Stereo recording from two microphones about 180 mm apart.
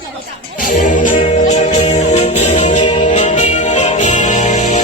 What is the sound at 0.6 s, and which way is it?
Music, 45° left (ahead or behind).